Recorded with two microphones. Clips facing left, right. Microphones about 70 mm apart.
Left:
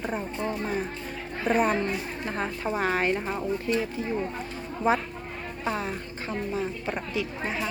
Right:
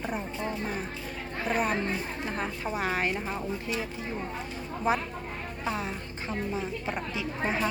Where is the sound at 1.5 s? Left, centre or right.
Centre.